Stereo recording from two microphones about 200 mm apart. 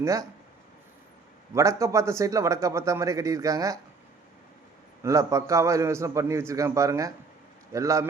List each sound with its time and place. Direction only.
0.0 s a man's voice: 15° right (ahead or behind)
1.5 s a man's voice: 15° right (ahead or behind)
5.0 s a man's voice: 15° right (ahead or behind)